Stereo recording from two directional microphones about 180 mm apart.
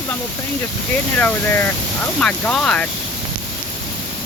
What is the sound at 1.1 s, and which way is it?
Speech, 10° left (ahead or behind).